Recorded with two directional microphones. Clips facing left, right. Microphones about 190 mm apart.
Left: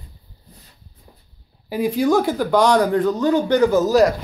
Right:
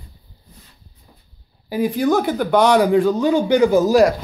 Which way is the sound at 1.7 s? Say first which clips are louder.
Even; centre (ahead or behind).